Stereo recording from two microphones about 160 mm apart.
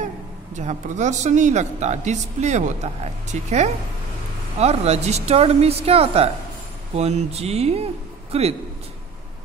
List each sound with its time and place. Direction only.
0.6 s a woman's voice: 50° right (ahead or behind)